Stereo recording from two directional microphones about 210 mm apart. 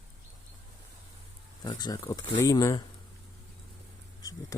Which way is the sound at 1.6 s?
20° left (ahead or behind).